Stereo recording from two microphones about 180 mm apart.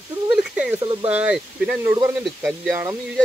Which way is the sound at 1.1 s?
5° right (ahead or behind).